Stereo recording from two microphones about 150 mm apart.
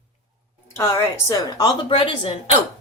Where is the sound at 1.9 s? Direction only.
35° left (ahead or behind).